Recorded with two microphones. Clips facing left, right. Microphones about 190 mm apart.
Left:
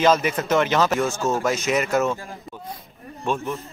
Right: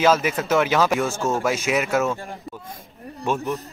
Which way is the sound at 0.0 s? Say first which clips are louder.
Even; 5° right (ahead or behind).